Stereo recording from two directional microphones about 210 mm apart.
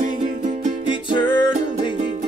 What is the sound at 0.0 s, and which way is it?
Music, 40° right (ahead or behind).